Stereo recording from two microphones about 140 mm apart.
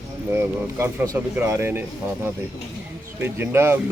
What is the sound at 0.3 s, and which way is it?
Speech, 20° right (ahead or behind).